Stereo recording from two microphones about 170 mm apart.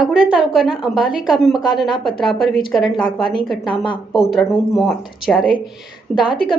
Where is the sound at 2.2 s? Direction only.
Centre (ahead or behind).